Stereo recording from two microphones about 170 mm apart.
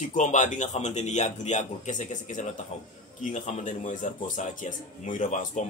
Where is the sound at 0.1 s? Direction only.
45° left (ahead or behind).